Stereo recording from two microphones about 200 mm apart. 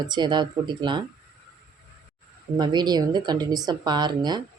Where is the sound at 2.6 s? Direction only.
20° right (ahead or behind).